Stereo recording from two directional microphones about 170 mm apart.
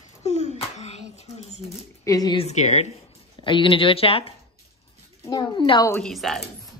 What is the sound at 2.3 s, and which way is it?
Speech, 40° left (ahead or behind).